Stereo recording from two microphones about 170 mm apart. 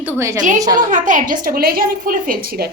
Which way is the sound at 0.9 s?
50° right (ahead or behind).